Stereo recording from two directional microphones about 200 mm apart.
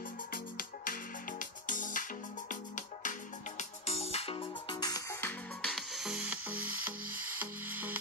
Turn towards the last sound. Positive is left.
turn(degrees=-10)  # may be behind; listen again after turning